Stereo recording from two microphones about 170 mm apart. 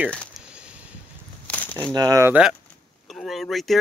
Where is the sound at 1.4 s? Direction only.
10° left (ahead or behind).